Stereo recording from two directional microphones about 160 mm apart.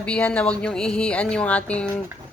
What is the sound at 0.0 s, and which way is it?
Speech, 5° left (ahead or behind).